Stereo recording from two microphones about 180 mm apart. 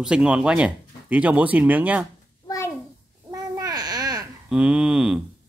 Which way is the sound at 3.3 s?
20° right (ahead or behind).